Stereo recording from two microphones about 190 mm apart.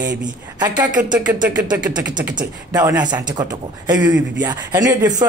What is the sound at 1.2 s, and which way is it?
Speech, 5° right (ahead or behind).